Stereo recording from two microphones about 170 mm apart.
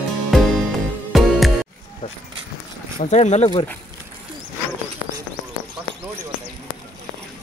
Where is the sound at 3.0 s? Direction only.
45° left (ahead or behind).